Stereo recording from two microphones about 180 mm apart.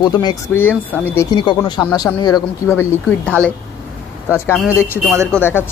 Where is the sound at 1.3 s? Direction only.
25° left (ahead or behind); by 3.3 s 10° left (ahead or behind).